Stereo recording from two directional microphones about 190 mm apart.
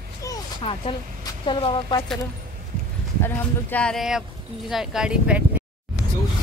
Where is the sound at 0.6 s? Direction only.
30° left (ahead or behind).